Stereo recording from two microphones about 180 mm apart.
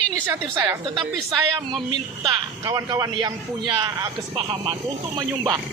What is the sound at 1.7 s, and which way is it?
A man's voice, 25° right (ahead or behind).